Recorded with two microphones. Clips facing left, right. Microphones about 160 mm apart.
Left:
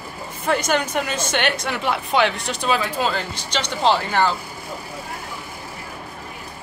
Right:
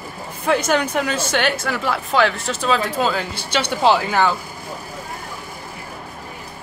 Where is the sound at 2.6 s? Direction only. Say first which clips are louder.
Right 2 dB; centre (ahead or behind).